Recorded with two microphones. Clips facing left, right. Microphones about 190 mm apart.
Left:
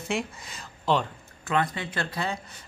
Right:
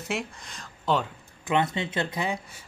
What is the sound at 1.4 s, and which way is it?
Speech, 20° right (ahead or behind).